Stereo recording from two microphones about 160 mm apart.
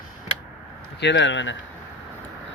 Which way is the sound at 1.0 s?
90° left.